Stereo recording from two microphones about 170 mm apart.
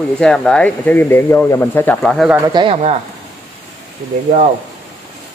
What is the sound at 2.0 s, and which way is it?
Speech, centre (ahead or behind).